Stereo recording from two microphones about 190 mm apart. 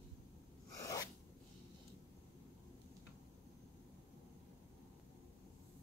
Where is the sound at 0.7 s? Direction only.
15° left (ahead or behind).